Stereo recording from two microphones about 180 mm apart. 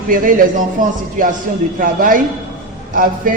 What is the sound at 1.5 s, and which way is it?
A man's voice, 50° right (ahead or behind).